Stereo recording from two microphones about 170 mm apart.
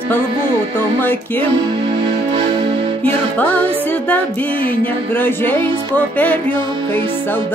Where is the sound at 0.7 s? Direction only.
10° left (ahead or behind).